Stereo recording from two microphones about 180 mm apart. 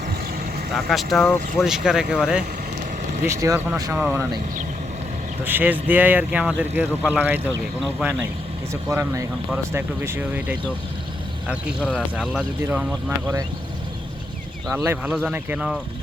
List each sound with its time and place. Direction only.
0.7 s speech: centre (ahead or behind)
3.2 s speech: 20° right (ahead or behind)
3.9 s speech: 10° right (ahead or behind)
5.5 s speech: 10° right (ahead or behind)
8.7 s speech: 15° right (ahead or behind)
12.2 s speech: centre (ahead or behind)
14.7 s speech: 15° right (ahead or behind)